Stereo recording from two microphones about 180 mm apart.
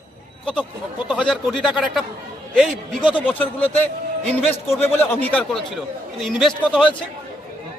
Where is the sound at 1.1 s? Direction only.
Centre (ahead or behind).